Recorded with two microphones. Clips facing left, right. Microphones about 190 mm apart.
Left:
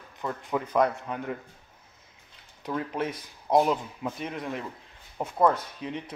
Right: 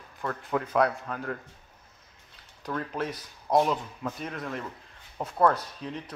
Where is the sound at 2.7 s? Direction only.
5° left (ahead or behind).